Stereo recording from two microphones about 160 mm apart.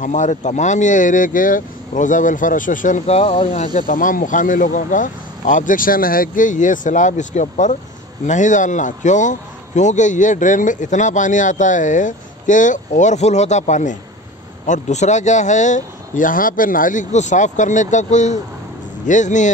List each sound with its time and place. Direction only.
0.0 s speech: 50° left (ahead or behind)